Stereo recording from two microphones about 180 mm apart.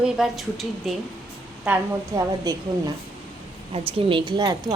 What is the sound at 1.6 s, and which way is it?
A woman's voice, 15° right (ahead or behind).